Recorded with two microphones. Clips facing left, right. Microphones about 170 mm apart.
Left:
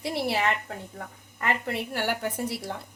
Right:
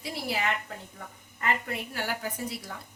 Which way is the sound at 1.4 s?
70° left (ahead or behind).